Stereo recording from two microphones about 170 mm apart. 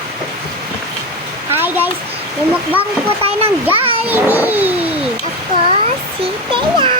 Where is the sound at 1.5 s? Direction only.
10° right (ahead or behind).